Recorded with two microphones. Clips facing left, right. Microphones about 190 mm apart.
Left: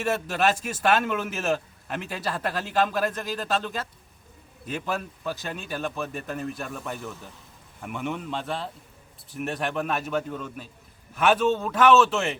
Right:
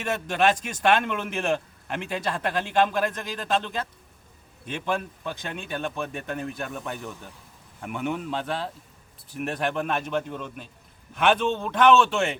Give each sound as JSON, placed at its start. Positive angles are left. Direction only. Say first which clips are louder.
{"t": 0.0, "sound": "speech", "louder": "right 1 dB", "side_deg": 5}